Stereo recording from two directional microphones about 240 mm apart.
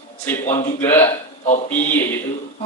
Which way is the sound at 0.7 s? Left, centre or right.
Centre.